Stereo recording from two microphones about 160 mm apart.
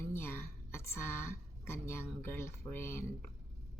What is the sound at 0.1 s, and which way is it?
Speech, 15° left (ahead or behind).